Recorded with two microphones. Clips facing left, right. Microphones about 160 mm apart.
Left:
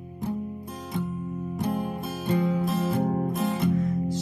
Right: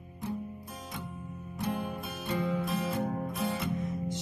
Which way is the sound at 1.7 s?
40° left (ahead or behind).